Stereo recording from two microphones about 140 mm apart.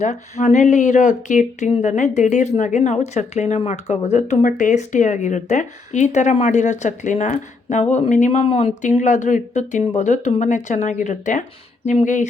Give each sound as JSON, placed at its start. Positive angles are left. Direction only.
{"t": 0.0, "sound": "speech", "side_deg": 55}